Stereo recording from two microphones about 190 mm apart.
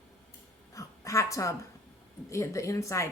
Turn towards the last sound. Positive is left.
turn(degrees=15)  # may be behind; listen again after turning